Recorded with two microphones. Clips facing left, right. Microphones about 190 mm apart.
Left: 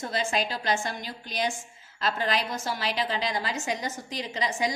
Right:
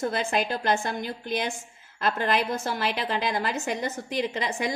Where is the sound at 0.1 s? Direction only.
55° right (ahead or behind).